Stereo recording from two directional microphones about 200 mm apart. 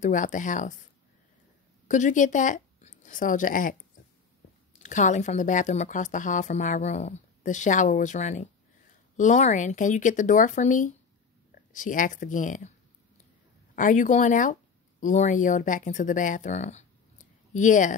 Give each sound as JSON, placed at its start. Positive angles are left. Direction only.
{"t": 0.0, "sound": "a woman's voice", "side_deg": 40}
{"t": 1.9, "sound": "speech", "side_deg": 40}
{"t": 4.8, "sound": "a woman's voice", "side_deg": 40}
{"t": 13.7, "sound": "speech", "side_deg": 40}